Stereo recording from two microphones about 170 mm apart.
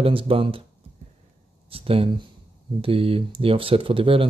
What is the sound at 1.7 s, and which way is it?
Speech, 35° right (ahead or behind).